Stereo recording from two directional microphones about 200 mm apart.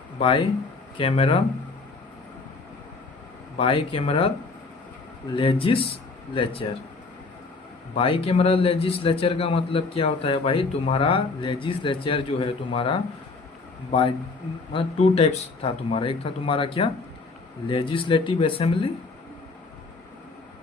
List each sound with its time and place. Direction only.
0.2 s a man's voice: 25° left (ahead or behind)
3.6 s a man's voice: 25° left (ahead or behind)
5.3 s a man's voice: 25° left (ahead or behind)
7.9 s a man's voice: 30° left (ahead or behind)
14.7 s a man's voice: 30° left (ahead or behind)